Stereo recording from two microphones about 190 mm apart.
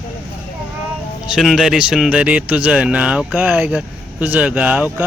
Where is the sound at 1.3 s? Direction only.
Centre (ahead or behind).